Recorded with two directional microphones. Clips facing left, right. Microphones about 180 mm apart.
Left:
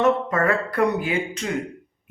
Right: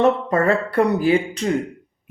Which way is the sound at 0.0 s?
30° right (ahead or behind).